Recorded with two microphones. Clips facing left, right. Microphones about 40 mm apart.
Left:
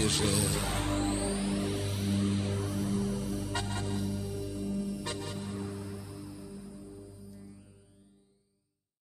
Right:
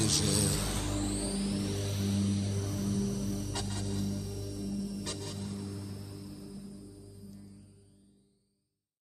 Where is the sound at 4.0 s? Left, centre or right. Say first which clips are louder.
Left 2 dB; centre.